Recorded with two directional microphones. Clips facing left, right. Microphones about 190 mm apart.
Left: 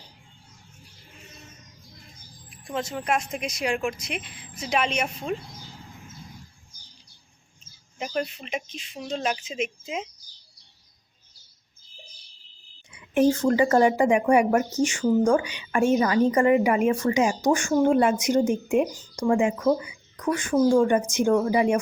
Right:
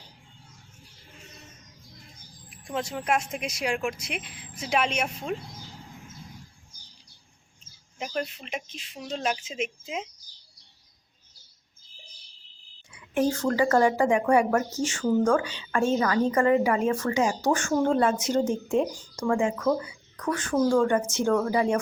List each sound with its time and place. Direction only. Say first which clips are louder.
2.6 s a woman's voice: left 1 dB; 5° right (ahead or behind)
7.9 s a woman's voice: left 3 dB; centre (ahead or behind)
12.9 s speech: left 5 dB; 20° left (ahead or behind)